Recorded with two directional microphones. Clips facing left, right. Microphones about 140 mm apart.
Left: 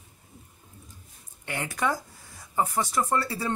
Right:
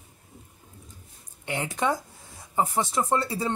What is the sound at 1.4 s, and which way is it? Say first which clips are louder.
Speech: right 2 dB; 20° right (ahead or behind).